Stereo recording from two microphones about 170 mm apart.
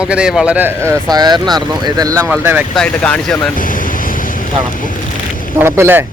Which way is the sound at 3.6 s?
50° left (ahead or behind).